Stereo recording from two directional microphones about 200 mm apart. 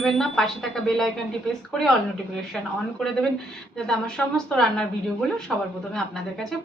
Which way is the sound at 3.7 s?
5° left (ahead or behind).